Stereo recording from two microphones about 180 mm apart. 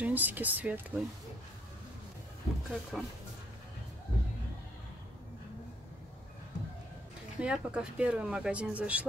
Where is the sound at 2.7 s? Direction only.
Centre (ahead or behind).